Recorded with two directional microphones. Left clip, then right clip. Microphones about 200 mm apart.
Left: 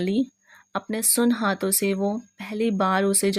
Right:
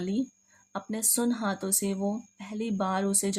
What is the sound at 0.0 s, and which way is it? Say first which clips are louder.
Speech: left 7 dB; 30° left (ahead or behind).